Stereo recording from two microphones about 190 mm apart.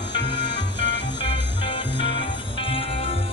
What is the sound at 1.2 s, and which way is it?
Music, 25° left (ahead or behind).